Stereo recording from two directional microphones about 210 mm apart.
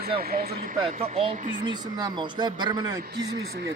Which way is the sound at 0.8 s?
25° right (ahead or behind).